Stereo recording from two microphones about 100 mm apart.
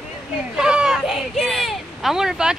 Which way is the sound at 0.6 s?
5° right (ahead or behind).